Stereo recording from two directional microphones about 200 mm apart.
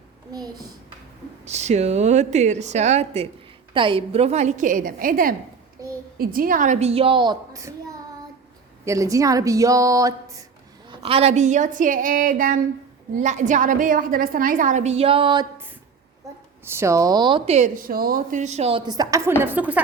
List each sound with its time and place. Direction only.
0.3 s a child's voice: 20° right (ahead or behind)
1.5 s a woman's voice: 35° right (ahead or behind)
8.8 s speech: 15° right (ahead or behind)
10.8 s a woman's voice: 30° right (ahead or behind)
16.6 s a woman's voice: 15° right (ahead or behind); by 18.8 s 35° right (ahead or behind)
18.9 s speech: 15° right (ahead or behind)